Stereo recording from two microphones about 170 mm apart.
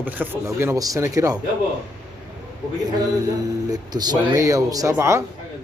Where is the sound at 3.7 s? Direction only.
20° right (ahead or behind).